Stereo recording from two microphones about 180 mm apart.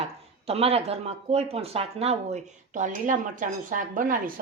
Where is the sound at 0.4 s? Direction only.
35° right (ahead or behind).